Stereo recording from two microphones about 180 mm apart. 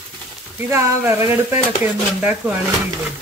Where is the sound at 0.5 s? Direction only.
15° right (ahead or behind).